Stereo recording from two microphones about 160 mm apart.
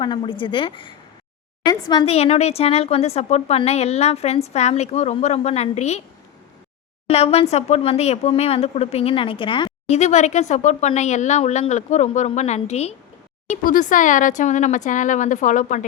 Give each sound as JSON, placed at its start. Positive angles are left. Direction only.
{"t": 0.0, "sound": "a woman's voice", "side_deg": 30}
{"t": 2.0, "sound": "a woman's voice", "side_deg": 40}
{"t": 7.1, "sound": "a woman's voice", "side_deg": 40}
{"t": 9.9, "sound": "speech", "side_deg": 45}